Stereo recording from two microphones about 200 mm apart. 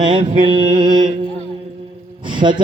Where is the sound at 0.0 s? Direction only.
25° right (ahead or behind).